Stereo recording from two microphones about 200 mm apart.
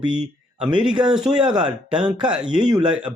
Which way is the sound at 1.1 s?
5° right (ahead or behind).